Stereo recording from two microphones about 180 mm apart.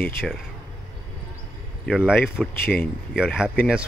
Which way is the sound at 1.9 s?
5° right (ahead or behind).